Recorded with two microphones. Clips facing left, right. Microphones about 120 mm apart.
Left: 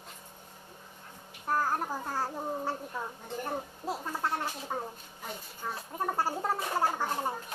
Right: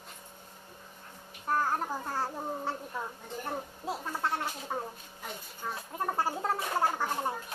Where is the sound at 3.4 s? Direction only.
5° left (ahead or behind).